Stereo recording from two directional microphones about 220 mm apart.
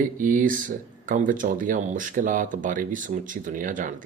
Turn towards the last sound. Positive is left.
turn(degrees=-35)  # may be behind; listen again after turning